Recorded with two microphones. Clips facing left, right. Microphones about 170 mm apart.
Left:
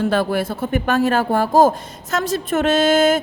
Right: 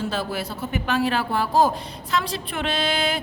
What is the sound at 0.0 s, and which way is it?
A woman's voice, 55° left (ahead or behind).